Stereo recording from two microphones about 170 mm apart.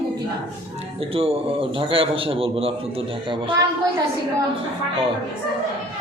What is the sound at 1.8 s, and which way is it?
Speech, 30° right (ahead or behind).